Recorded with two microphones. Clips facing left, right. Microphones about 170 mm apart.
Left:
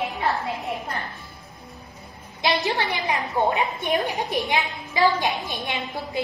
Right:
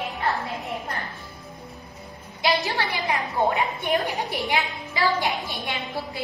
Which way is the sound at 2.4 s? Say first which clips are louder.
Left 1 dB; 20° left (ahead or behind).